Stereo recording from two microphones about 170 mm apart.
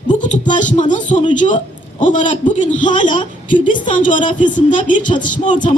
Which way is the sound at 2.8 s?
30° left (ahead or behind).